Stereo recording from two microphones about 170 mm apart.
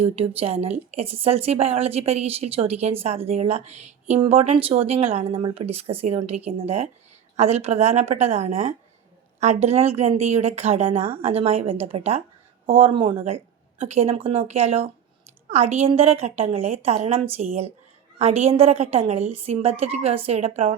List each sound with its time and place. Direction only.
0.0 s a woman's voice: 35° right (ahead or behind)